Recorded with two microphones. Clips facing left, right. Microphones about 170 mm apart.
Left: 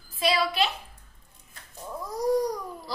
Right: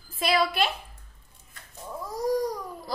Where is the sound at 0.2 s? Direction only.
50° right (ahead or behind).